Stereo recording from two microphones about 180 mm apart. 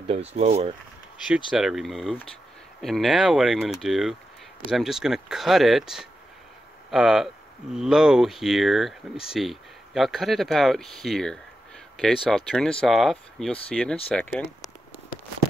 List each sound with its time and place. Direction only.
0.3 s speech: 35° right (ahead or behind)
1.5 s speech: centre (ahead or behind)